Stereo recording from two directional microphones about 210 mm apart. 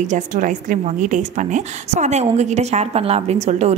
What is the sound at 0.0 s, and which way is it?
A woman's voice, 35° right (ahead or behind).